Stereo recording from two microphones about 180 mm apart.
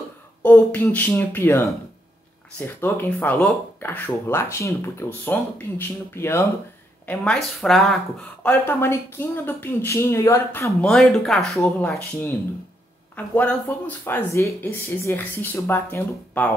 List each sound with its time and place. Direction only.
0.4 s speech: 10° left (ahead or behind)
2.6 s speech: 10° left (ahead or behind)
13.1 s speech: 5° left (ahead or behind)